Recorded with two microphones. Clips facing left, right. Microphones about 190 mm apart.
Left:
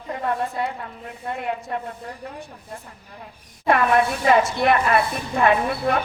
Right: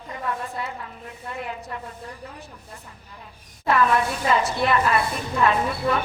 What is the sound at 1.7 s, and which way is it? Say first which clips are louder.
Speech: left 6 dB; 60° left (ahead or behind).